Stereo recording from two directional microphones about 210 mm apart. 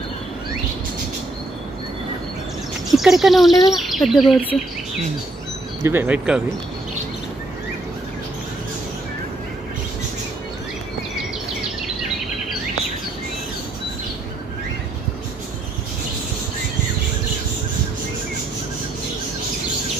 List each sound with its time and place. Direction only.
3.0 s speech: centre (ahead or behind)
5.9 s speech: 10° right (ahead or behind)